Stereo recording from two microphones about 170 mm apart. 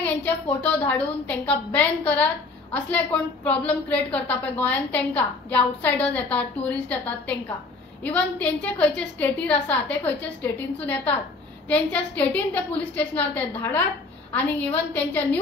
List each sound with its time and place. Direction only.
0.0 s a woman's voice: 10° left (ahead or behind)